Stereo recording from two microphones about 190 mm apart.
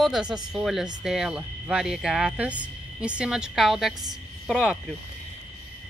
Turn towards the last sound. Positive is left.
turn(degrees=0)  # may be behind; listen again after turning